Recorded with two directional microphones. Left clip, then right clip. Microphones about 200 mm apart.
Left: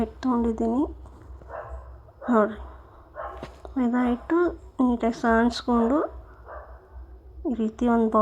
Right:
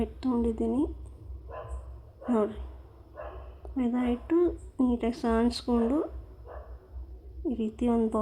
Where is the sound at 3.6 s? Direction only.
5° left (ahead or behind).